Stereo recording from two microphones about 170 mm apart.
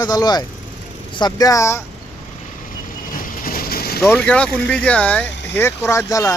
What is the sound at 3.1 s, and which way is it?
Vehicle, 55° left (ahead or behind).